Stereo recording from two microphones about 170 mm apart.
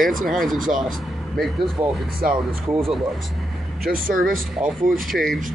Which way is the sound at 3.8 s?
55° right (ahead or behind).